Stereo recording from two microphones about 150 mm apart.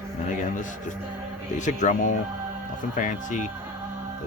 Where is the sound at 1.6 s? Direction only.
55° left (ahead or behind).